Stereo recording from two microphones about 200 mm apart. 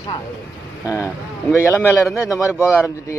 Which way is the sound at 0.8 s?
10° right (ahead or behind).